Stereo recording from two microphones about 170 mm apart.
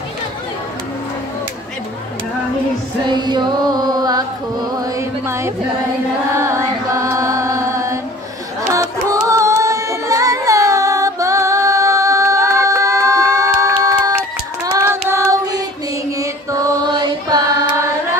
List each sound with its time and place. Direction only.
3.1 s carnatic music: 25° right (ahead or behind)
4.7 s music: 15° right (ahead or behind)
6.3 s chant: 15° right (ahead or behind)
8.7 s carnatic music: 20° right (ahead or behind)
14.7 s singing: 15° right (ahead or behind)
16.2 s music: 20° right (ahead or behind)